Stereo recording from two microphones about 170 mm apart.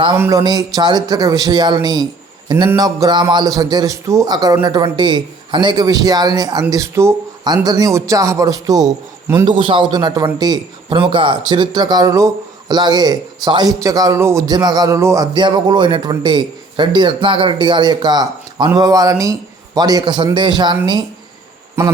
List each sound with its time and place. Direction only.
0.2 s a man's voice: 20° right (ahead or behind)